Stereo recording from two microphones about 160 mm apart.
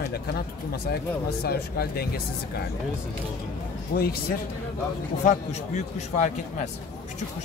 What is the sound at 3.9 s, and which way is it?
Speech, 75° left (ahead or behind).